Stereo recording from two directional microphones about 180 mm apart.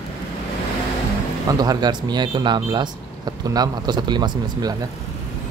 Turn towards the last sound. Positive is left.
turn(degrees=-25)  # may be behind; listen again after turning